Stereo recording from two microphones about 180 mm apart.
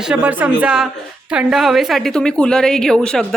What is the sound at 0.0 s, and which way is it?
A woman's voice, 5° right (ahead or behind).